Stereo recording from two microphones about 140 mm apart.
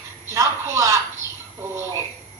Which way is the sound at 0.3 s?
20° right (ahead or behind).